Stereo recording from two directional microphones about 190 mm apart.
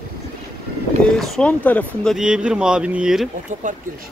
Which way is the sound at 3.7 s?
40° right (ahead or behind).